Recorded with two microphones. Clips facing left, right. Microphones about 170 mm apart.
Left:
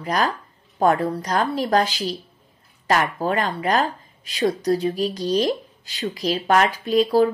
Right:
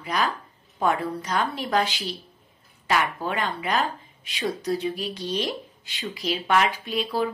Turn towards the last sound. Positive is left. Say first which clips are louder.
# left 9 dB
turn(degrees=40)  # may be behind; listen again after turning